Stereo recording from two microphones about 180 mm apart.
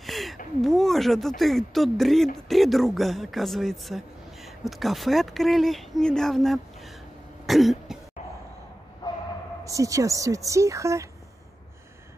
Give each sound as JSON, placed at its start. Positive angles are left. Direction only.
{"t": 0.0, "sound": "a sound", "side_deg": 0}
{"t": 0.6, "sound": "speech", "side_deg": 0}
{"t": 7.4, "sound": "throat clearing", "side_deg": 0}
{"t": 9.0, "sound": "bow-wow", "side_deg": 20}
{"t": 9.7, "sound": "speech", "side_deg": -20}